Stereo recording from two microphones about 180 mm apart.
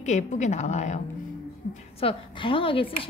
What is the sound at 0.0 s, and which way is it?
A woman's voice, 40° left (ahead or behind).